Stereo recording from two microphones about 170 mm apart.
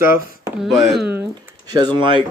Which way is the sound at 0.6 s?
Centre (ahead or behind).